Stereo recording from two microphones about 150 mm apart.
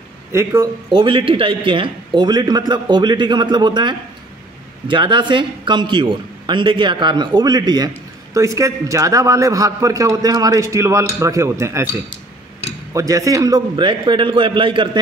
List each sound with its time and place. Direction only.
0.3 s a man's voice: 20° right (ahead or behind)
0.8 s a man's voice: 35° right (ahead or behind); by 11.9 s 20° right (ahead or behind)
12.9 s a man's voice: 25° right (ahead or behind)